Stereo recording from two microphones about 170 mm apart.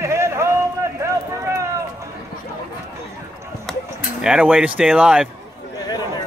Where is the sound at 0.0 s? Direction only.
15° right (ahead or behind).